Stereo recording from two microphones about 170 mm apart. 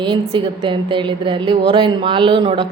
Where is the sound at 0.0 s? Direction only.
30° right (ahead or behind).